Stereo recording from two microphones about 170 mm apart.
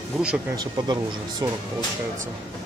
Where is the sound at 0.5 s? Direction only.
25° right (ahead or behind).